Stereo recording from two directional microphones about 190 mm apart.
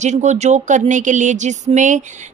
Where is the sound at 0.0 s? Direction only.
35° right (ahead or behind).